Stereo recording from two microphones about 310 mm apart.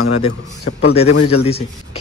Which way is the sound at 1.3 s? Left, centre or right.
Centre.